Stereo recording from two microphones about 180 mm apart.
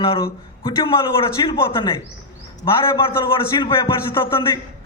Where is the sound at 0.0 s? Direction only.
30° left (ahead or behind).